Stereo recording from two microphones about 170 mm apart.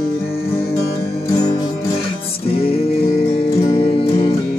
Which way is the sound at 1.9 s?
35° left (ahead or behind).